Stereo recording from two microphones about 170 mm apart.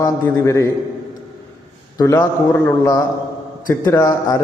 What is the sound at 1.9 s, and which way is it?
A man's voice, 20° left (ahead or behind).